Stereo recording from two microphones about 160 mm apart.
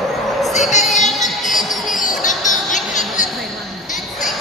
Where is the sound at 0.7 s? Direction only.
45° left (ahead or behind).